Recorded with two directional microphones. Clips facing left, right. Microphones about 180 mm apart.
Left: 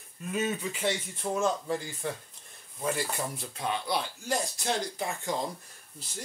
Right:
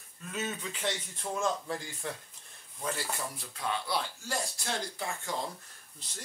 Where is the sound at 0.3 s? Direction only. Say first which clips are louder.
Left 6 dB; 10° left (ahead or behind).